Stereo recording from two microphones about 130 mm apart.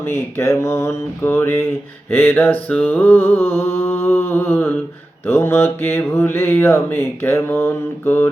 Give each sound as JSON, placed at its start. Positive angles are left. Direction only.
{"t": 0.0, "sound": "mantra", "side_deg": 20}